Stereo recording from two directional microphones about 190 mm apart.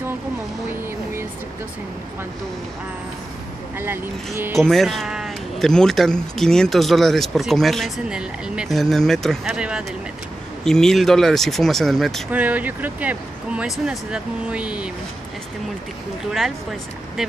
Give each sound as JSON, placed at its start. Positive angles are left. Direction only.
{"t": 3.7, "sound": "speech", "side_deg": -10}
{"t": 4.6, "sound": "speech", "side_deg": 0}
{"t": 17.2, "sound": "speech", "side_deg": 0}